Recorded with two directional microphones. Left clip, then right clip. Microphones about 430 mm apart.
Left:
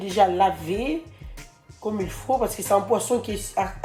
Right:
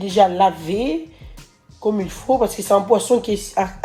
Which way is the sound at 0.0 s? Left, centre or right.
Right.